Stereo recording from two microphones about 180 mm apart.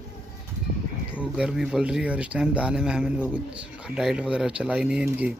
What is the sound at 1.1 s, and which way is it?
Speech, 5° right (ahead or behind).